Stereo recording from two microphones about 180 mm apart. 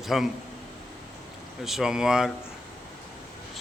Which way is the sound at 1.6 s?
Centre (ahead or behind).